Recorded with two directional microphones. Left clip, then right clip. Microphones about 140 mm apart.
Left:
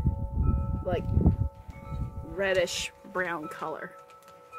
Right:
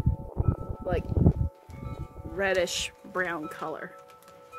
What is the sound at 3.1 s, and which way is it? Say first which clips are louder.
Speech: even; 5° right (ahead or behind).